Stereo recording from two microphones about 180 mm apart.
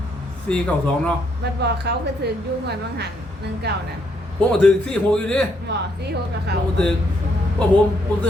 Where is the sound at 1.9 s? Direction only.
65° right (ahead or behind).